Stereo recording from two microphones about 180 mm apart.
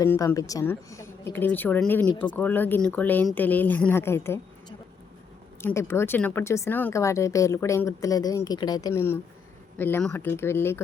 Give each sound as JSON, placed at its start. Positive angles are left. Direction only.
{"t": 0.0, "sound": "speech", "side_deg": 15}
{"t": 5.6, "sound": "speech", "side_deg": 15}